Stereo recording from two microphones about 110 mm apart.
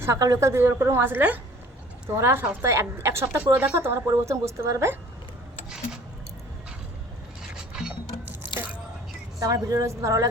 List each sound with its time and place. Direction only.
0.0 s a woman's voice: 30° right (ahead or behind)
7.5 s mechanisms: 5° right (ahead or behind)
9.4 s a woman's voice: 30° right (ahead or behind)